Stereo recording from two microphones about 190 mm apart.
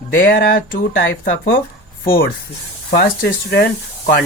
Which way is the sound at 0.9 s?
75° left (ahead or behind).